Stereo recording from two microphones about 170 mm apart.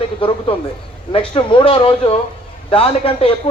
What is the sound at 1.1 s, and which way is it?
A man's voice, 30° left (ahead or behind).